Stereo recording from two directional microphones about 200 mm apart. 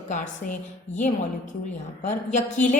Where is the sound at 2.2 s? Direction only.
40° left (ahead or behind).